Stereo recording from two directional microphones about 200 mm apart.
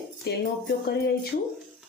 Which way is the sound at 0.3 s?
55° left (ahead or behind).